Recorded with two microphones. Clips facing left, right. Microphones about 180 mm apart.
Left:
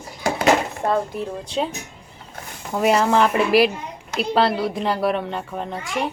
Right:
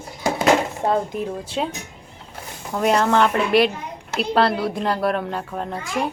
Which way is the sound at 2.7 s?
5° left (ahead or behind).